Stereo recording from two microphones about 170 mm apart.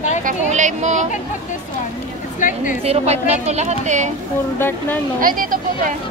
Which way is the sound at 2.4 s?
50° left (ahead or behind).